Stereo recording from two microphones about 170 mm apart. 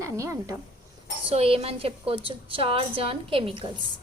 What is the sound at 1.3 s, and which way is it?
A woman's voice, 35° right (ahead or behind).